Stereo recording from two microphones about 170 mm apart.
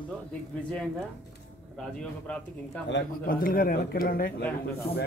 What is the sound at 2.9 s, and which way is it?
Speech, 60° left (ahead or behind).